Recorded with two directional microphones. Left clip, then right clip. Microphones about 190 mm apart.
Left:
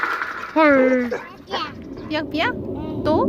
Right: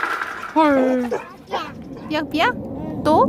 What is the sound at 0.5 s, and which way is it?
Speech, 10° right (ahead or behind).